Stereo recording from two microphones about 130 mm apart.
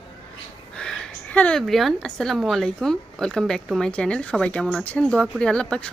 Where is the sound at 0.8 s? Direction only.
5° left (ahead or behind).